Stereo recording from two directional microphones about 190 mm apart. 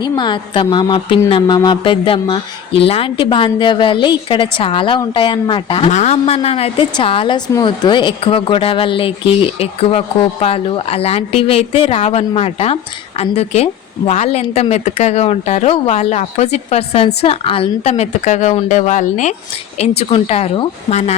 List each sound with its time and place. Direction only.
0.0 s a woman's voice: 25° left (ahead or behind); by 19.3 s 40° left (ahead or behind)
20.0 s a woman's voice: 30° left (ahead or behind)